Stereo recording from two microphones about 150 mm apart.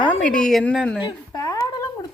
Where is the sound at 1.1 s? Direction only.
25° left (ahead or behind).